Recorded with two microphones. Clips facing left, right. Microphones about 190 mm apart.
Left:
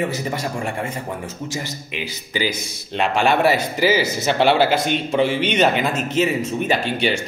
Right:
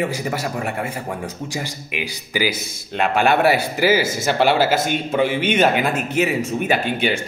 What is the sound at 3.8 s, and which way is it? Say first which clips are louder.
Speech: even; 50° right (ahead or behind).